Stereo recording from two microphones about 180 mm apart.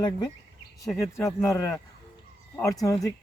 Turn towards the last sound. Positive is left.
turn(degrees=20)  # may be behind; listen again after turning